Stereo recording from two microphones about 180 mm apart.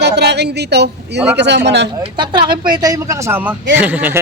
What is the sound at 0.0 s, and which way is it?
A woman's voice, 70° right (ahead or behind).